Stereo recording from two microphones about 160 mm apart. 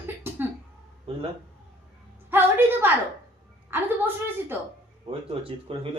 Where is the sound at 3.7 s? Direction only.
15° right (ahead or behind).